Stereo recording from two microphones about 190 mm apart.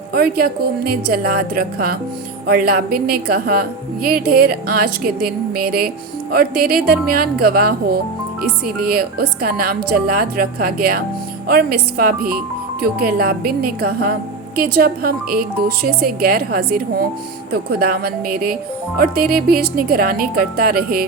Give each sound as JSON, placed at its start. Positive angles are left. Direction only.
{"t": 0.1, "sound": "a woman's voice", "side_deg": -55}